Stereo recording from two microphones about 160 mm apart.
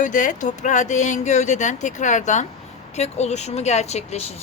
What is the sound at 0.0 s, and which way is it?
A woman's voice, 55° left (ahead or behind).